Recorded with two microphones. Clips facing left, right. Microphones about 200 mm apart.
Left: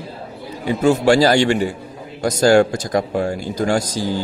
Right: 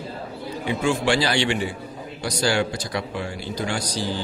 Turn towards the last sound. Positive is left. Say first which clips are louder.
# left 7 dB
turn(degrees=45)  # may be behind; listen again after turning